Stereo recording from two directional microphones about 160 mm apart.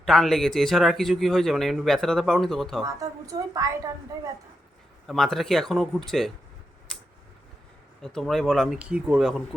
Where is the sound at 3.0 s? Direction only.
20° right (ahead or behind).